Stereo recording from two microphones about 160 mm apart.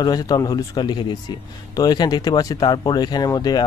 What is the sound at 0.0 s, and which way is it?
Speech, 25° left (ahead or behind).